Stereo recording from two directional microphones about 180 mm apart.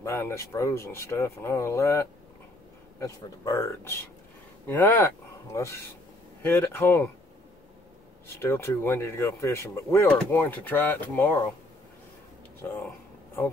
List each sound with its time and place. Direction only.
0.0 s speech: 15° left (ahead or behind)
8.4 s speech: 15° left (ahead or behind)
12.6 s a sound: 10° left (ahead or behind)